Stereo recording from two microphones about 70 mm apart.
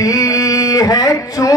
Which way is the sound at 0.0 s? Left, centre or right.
Left.